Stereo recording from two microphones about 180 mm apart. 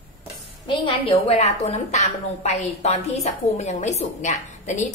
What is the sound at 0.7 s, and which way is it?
A woman's voice, 30° left (ahead or behind).